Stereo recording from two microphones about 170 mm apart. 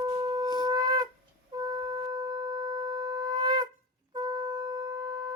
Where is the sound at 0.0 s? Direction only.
25° right (ahead or behind).